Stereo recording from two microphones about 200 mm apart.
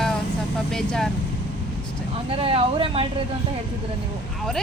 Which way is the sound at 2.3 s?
30° right (ahead or behind).